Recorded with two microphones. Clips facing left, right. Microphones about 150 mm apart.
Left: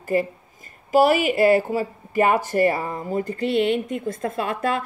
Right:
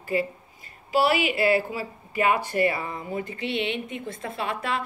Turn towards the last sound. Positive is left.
turn(degrees=45)  # may be behind; listen again after turning